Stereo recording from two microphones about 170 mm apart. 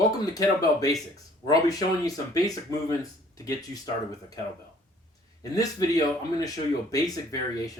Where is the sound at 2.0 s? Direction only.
20° left (ahead or behind).